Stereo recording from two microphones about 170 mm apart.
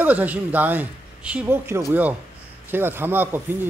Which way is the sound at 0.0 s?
10° right (ahead or behind).